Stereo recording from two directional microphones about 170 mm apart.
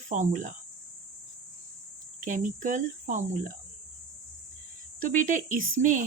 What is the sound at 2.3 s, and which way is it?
Speech, 50° right (ahead or behind).